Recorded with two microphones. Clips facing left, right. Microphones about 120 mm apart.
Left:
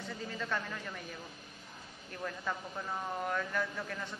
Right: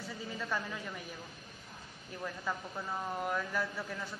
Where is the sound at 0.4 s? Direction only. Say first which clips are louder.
Even; 5° right (ahead or behind).